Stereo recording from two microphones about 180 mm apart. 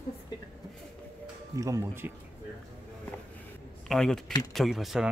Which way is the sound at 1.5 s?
20° right (ahead or behind).